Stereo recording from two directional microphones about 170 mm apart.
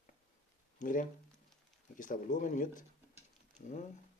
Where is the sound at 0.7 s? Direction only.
50° left (ahead or behind).